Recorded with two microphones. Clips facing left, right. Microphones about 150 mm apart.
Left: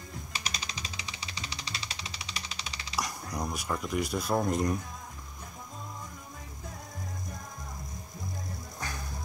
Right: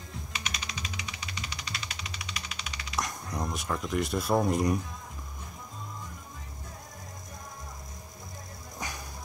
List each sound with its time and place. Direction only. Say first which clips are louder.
0.3 s music: right 1 dB; 35° left (ahead or behind)
3.0 s speech: right 1 dB; centre (ahead or behind)
8.7 s music: right 2 dB; 15° right (ahead or behind)